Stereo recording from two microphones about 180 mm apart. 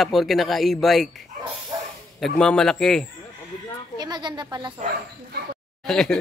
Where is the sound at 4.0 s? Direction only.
25° right (ahead or behind).